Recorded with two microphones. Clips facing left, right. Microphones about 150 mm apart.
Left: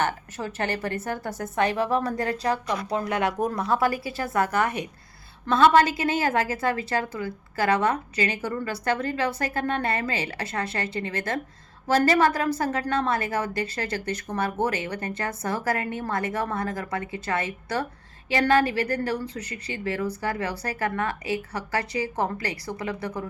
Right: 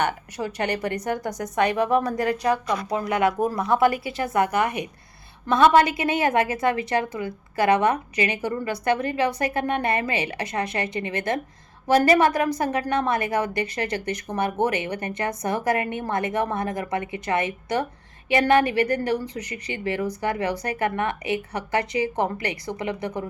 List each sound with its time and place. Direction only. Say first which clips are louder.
0.0 s a woman's voice: right 2 dB; 15° right (ahead or behind)